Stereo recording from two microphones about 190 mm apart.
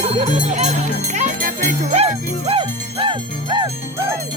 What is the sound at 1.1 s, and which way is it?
Jingle bell, 45° right (ahead or behind).